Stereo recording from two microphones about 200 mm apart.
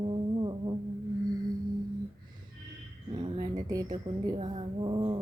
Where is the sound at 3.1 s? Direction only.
25° right (ahead or behind).